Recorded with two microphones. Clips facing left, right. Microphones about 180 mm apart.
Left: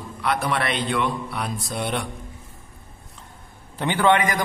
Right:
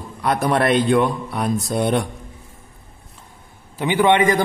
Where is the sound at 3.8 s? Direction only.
10° right (ahead or behind).